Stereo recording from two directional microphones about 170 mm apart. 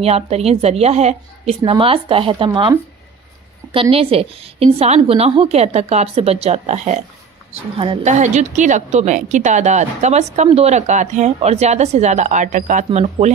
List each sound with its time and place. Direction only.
0.0 s a woman's voice: 35° right (ahead or behind)
3.7 s a woman's voice: 35° right (ahead or behind)
7.7 s a woman's voice: 30° right (ahead or behind)
8.0 s a woman's voice: 45° right (ahead or behind)